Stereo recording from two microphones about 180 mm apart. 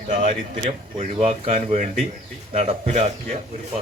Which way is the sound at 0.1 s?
30° right (ahead or behind).